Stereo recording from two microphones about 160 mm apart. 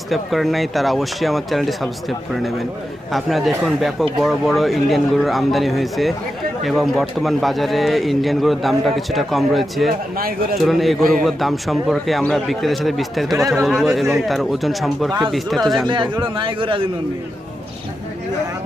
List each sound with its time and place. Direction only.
0.1 s a man's voice: centre (ahead or behind)
10.1 s speech: 70° right (ahead or behind)
10.6 s a man's voice: centre (ahead or behind)
16.3 s a man's voice: 30° right (ahead or behind)